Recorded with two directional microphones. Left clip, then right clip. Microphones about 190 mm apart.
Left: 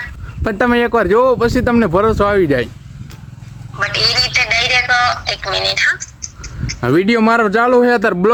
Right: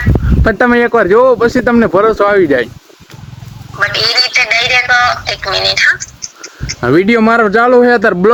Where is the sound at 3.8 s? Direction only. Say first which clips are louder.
Right 4 dB; 15° left (ahead or behind).